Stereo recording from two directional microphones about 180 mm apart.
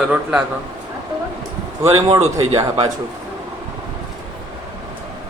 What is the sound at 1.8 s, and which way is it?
A man's voice, 15° right (ahead or behind).